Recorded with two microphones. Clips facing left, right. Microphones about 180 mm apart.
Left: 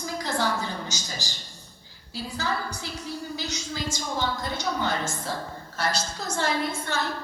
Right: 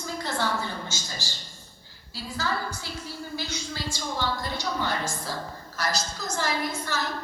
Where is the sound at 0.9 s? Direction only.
15° left (ahead or behind).